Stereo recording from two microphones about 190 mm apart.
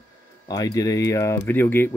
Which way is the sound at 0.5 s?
20° left (ahead or behind).